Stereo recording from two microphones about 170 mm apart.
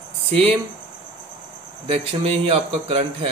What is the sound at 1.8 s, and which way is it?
Speech, 35° right (ahead or behind).